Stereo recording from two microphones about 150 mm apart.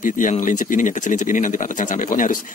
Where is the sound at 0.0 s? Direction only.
60° left (ahead or behind).